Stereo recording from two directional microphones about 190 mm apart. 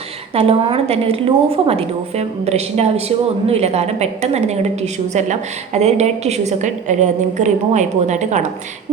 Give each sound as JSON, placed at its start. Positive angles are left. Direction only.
{"t": 0.3, "sound": "a woman's voice", "side_deg": -30}